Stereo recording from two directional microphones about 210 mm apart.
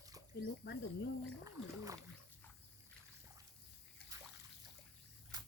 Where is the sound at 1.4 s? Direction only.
15° right (ahead or behind).